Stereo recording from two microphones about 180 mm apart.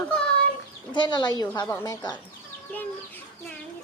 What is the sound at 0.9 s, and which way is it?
Speech, 25° left (ahead or behind).